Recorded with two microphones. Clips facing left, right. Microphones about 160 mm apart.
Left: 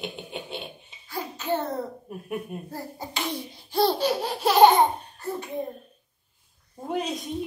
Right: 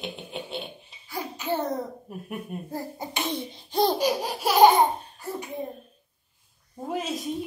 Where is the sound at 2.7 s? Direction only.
20° right (ahead or behind).